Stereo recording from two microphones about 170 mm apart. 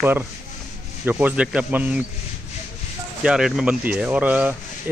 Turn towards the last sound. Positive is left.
turn(degrees=-10)  # may be behind; listen again after turning